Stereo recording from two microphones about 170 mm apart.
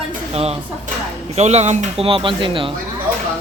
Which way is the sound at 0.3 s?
35° right (ahead or behind).